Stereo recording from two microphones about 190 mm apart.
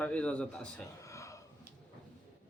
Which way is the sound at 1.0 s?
15° left (ahead or behind).